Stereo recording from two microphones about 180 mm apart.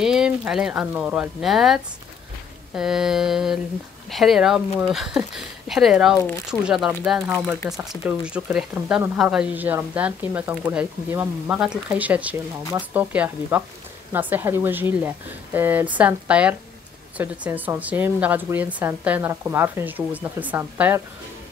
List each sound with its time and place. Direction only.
0.0 s speech: 5° right (ahead or behind)